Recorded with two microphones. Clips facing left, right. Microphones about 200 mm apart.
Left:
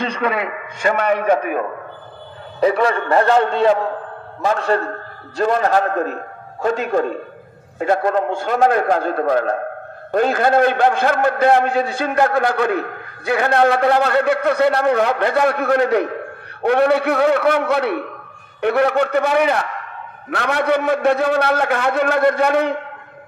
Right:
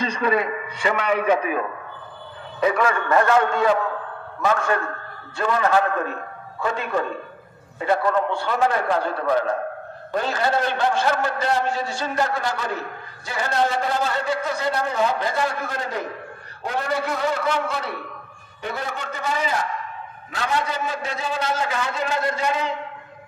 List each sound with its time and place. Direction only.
0.1 s a man's voice: 65° left (ahead or behind)
2.6 s a man's voice: 35° left (ahead or behind); by 22.8 s 60° left (ahead or behind)